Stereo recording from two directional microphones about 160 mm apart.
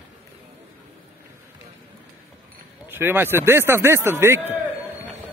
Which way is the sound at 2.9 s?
15° right (ahead or behind).